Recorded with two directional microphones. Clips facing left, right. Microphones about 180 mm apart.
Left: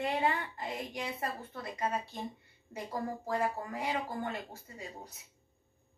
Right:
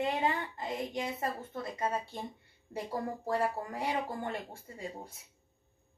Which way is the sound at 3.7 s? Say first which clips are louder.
Right 1 dB; 30° right (ahead or behind).